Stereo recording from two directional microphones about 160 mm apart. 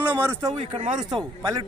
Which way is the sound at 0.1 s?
15° right (ahead or behind).